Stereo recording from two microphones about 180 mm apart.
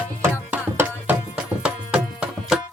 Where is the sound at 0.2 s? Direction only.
10° right (ahead or behind).